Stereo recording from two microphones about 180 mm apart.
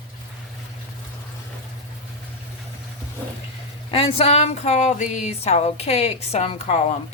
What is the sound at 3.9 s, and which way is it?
Speech, 35° left (ahead or behind).